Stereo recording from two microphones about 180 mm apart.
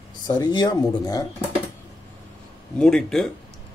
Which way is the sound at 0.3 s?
25° left (ahead or behind).